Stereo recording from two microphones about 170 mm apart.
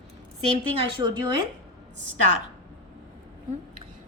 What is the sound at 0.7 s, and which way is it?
Speech, 30° right (ahead or behind).